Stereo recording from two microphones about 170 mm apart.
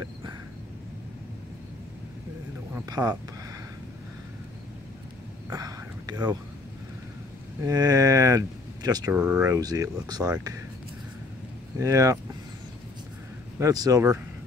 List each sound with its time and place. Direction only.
0.0 s a sound: 25° right (ahead or behind)
2.7 s speech: 20° right (ahead or behind)
5.5 s a sound: 20° right (ahead or behind)
7.6 s speech: 20° right (ahead or behind)
9.1 s speech: 10° right (ahead or behind)
9.6 s speech: 20° right (ahead or behind)
11.8 s speech: 20° right (ahead or behind)
13.6 s speech: 20° right (ahead or behind)